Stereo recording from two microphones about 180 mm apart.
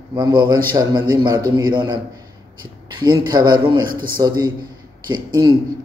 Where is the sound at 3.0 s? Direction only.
25° right (ahead or behind).